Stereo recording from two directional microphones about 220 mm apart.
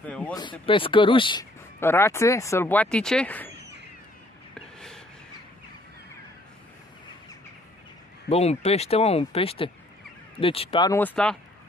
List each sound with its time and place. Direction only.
0.0 s a sound: 5° left (ahead or behind)
0.3 s speech: 20° left (ahead or behind)
4.6 s snort: 5° left (ahead or behind)
8.3 s speech: 30° left (ahead or behind)
11.0 s speech: 5° left (ahead or behind)